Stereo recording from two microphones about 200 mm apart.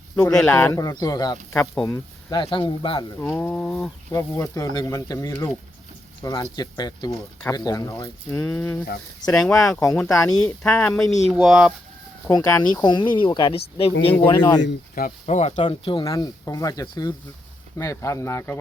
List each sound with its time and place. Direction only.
0.3 s speech: 10° left (ahead or behind)
1.5 s speech: 10° left (ahead or behind)
2.3 s speech: 25° left (ahead or behind)
3.2 s speech: 10° left (ahead or behind)
4.1 s speech: 15° left (ahead or behind)
10.1 s speech: 20° left (ahead or behind)
10.6 s speech: 5° left (ahead or behind)
12.3 s speech: 15° left (ahead or behind)
14.9 s speech: 40° left (ahead or behind); by 18.6 s 15° left (ahead or behind)